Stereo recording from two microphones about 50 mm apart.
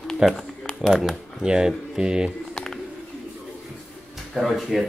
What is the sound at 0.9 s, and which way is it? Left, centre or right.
Speech, centre.